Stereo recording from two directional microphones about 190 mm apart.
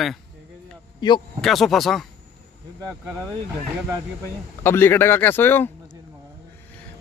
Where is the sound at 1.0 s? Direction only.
25° left (ahead or behind).